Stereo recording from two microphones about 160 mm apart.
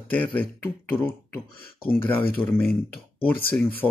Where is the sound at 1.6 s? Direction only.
70° left (ahead or behind).